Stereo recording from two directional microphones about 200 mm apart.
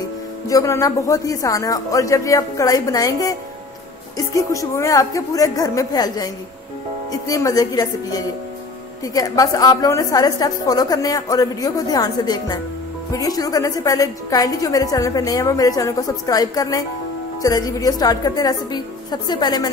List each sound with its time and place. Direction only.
0.5 s a woman's voice: 15° left (ahead or behind)